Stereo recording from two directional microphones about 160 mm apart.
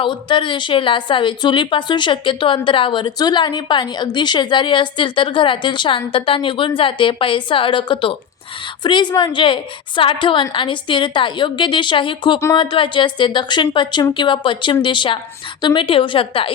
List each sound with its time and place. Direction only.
0.0 s a woman's voice: 30° left (ahead or behind)